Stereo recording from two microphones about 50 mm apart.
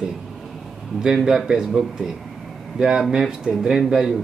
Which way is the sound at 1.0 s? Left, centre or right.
Centre.